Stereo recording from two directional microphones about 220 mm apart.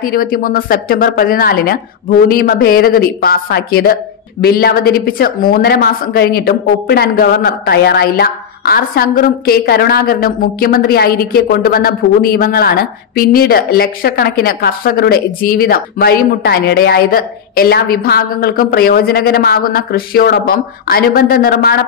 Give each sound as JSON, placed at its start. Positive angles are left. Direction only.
{"t": 0.0, "sound": "speech", "side_deg": 40}